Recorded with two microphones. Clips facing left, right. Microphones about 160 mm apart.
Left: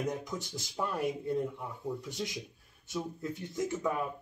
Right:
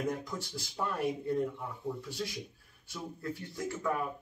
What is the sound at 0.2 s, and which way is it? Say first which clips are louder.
Speech: left 1 dB; 20° left (ahead or behind).